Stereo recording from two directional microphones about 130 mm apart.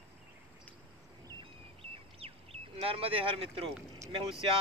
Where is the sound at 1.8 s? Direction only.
50° right (ahead or behind).